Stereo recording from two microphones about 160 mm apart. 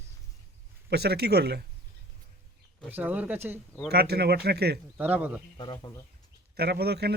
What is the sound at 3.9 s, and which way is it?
Speech, 80° right.